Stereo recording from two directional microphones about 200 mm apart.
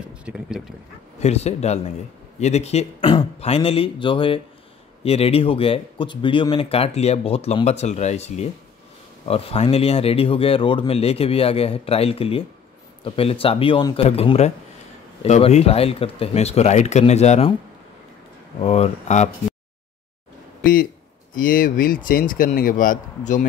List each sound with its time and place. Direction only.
0.1 s speech: 5° right (ahead or behind)
1.2 s speech: 30° left (ahead or behind)
18.6 s speech: 30° left (ahead or behind)
21.4 s speech: 45° left (ahead or behind)